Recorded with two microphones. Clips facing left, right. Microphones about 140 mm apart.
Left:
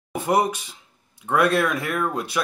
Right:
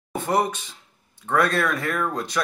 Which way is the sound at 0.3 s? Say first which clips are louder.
Left 2 dB; 10° left (ahead or behind).